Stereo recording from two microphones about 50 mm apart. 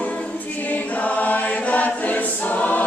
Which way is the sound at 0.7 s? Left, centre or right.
Left.